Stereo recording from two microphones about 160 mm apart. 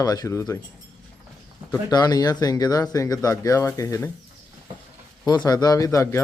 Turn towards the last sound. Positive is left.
turn(degrees=15)  # may be behind; listen again after turning